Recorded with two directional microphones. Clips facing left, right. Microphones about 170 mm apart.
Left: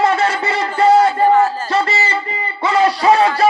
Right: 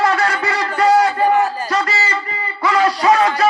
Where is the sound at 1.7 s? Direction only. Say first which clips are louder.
Left 2 dB; 25° left (ahead or behind).